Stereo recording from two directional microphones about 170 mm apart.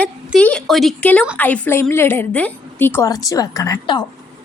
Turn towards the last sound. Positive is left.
turn(degrees=20)  # may be behind; listen again after turning